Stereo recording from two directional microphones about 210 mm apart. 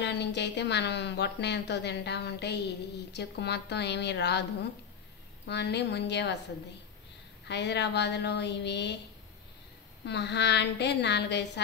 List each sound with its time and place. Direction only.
0.0 s a woman's voice: 55° left (ahead or behind)
5.5 s a woman's voice: 55° left (ahead or behind)
7.4 s a woman's voice: 55° left (ahead or behind)
10.0 s a woman's voice: 55° left (ahead or behind)